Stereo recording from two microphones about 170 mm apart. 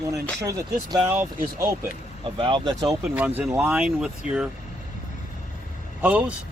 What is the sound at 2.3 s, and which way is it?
Speech, 30° right (ahead or behind).